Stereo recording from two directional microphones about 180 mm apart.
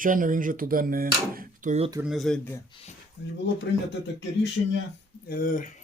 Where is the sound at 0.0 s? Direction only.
50° right (ahead or behind).